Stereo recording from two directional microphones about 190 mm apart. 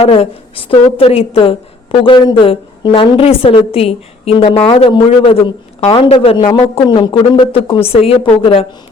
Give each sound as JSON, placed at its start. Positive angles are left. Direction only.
{"t": 0.0, "sound": "a woman's voice", "side_deg": 30}